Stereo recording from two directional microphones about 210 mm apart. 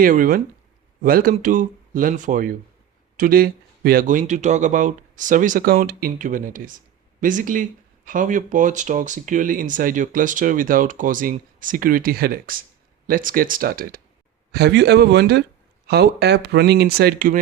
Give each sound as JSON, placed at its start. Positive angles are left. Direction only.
{"t": 0.0, "sound": "speech", "side_deg": -40}